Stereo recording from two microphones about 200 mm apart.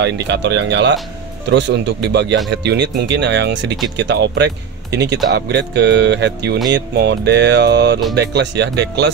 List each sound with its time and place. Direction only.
0.0 s speech: 60° right (ahead or behind)